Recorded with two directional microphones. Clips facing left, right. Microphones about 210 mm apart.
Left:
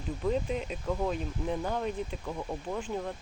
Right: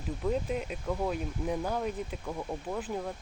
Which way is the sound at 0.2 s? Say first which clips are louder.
Left 1 dB; 5° right (ahead or behind).